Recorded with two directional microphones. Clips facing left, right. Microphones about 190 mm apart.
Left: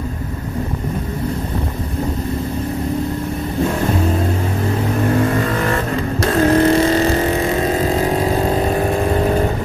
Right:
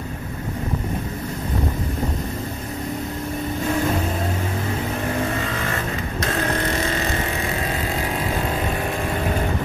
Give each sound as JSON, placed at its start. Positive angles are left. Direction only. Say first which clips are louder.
{"t": 6.3, "sound": "vehicle", "louder": "left 12 dB", "side_deg": 35}